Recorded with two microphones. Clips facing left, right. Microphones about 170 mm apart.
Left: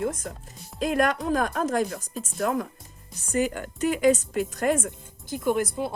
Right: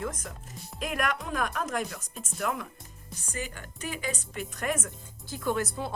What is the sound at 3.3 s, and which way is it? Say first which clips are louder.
Speech: left 13 dB; 55° left (ahead or behind).